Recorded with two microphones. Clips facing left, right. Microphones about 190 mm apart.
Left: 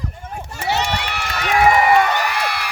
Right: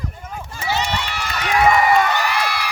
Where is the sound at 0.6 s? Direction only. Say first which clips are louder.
Left 1 dB; 65° left (ahead or behind).